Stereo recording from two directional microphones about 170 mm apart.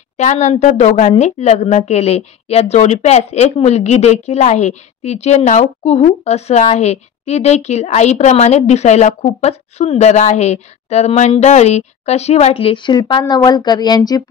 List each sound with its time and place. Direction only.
0.2 s speech: 45° left (ahead or behind); by 14.2 s 25° left (ahead or behind)